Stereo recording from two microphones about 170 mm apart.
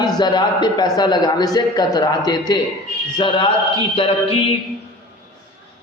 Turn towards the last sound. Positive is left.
turn(degrees=35)  # may be behind; listen again after turning